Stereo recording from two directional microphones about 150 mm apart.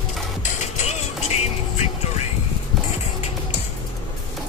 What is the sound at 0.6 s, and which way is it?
Music, 50° left (ahead or behind).